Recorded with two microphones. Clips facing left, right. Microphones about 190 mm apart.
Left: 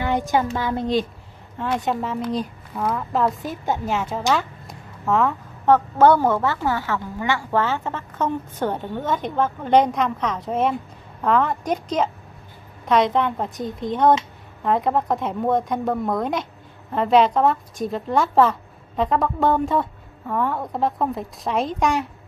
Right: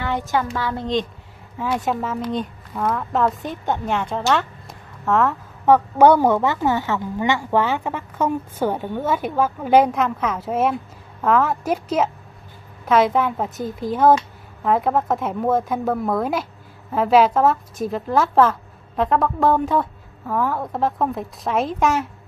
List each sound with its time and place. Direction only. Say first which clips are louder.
0.0 s a woman's voice: left 2 dB; 15° left (ahead or behind)
1.6 s a woman's voice: right 1 dB; 5° right (ahead or behind)
4.3 s a sound: right 1 dB; centre (ahead or behind)
5.7 s a woman's voice: right 2 dB; 15° right (ahead or behind)